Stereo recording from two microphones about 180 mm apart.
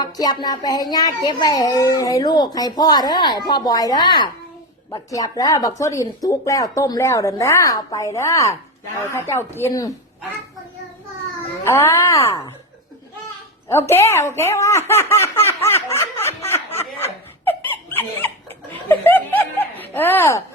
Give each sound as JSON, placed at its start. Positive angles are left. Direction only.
{"t": 0.0, "sound": "speech", "side_deg": 20}
{"t": 11.6, "sound": "speech", "side_deg": 15}
{"t": 13.7, "sound": "speech", "side_deg": 15}
{"t": 15.4, "sound": "snicker", "side_deg": 15}
{"t": 18.9, "sound": "snicker", "side_deg": 10}